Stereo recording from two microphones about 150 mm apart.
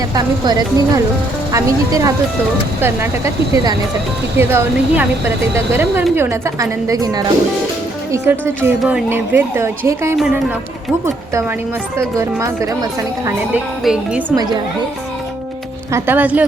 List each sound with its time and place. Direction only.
0.1 s a woman's voice: 25° right (ahead or behind)
8.8 s speech: 5° right (ahead or behind)
9.0 s a woman's voice: 15° right (ahead or behind)
11.9 s a woman's voice: 20° right (ahead or behind)
13.5 s a woman's voice: 5° right (ahead or behind)
15.9 s a woman's voice: 15° right (ahead or behind)